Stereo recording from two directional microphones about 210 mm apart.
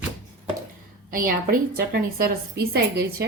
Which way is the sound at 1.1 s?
40° right (ahead or behind).